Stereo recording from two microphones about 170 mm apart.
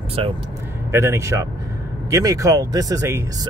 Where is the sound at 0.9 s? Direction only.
15° right (ahead or behind).